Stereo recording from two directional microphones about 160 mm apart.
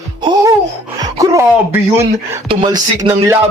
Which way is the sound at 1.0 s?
20° right (ahead or behind).